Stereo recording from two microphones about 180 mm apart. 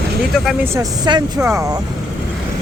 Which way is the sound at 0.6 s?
15° right (ahead or behind).